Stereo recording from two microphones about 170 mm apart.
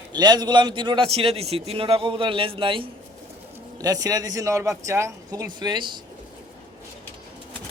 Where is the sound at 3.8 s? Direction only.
20° right (ahead or behind).